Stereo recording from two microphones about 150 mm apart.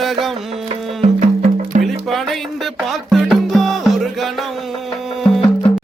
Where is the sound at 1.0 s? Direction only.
45° right (ahead or behind).